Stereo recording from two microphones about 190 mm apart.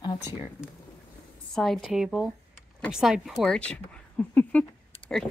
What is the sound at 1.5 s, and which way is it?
Speech, centre (ahead or behind).